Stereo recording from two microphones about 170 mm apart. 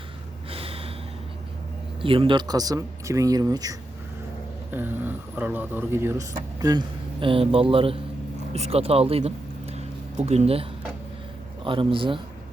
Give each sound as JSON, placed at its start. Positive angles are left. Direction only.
{"t": 0.5, "sound": "snort", "side_deg": -35}
{"t": 2.0, "sound": "a man's voice", "side_deg": -30}
{"t": 9.7, "sound": "a sound", "side_deg": -40}
{"t": 11.6, "sound": "a man's voice", "side_deg": -30}